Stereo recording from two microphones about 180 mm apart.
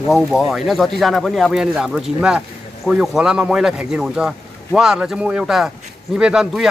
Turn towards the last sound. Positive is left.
turn(degrees=-5)  # may be behind; listen again after turning